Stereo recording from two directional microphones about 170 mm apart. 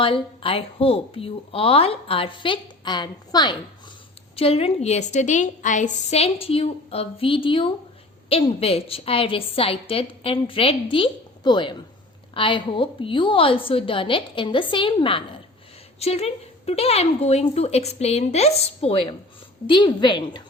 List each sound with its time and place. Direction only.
0.0 s a woman's voice: 30° left (ahead or behind)